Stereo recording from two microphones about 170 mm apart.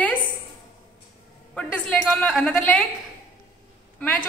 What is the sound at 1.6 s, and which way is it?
A woman's voice, 5° left (ahead or behind).